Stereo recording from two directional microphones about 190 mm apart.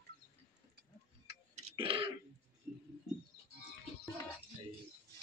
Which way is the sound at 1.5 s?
30° right (ahead or behind).